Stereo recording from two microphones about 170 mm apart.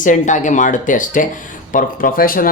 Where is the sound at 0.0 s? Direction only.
50° left (ahead or behind).